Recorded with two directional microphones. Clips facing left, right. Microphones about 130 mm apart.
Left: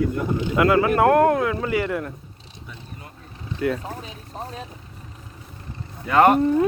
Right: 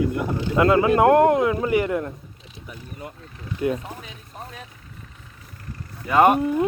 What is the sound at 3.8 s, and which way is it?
Speech, 35° left (ahead or behind).